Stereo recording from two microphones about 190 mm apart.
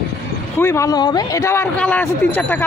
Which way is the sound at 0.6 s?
15° left (ahead or behind).